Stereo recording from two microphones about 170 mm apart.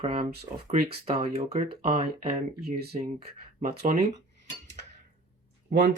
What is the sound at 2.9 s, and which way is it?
Speech, 40° right (ahead or behind).